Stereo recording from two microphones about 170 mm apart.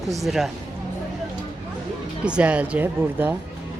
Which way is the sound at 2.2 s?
5° right (ahead or behind).